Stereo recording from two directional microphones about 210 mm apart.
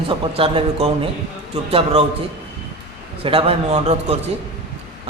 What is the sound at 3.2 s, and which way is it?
Speech, 25° right (ahead or behind).